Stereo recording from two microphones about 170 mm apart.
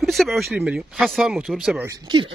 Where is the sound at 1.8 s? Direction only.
25° right (ahead or behind).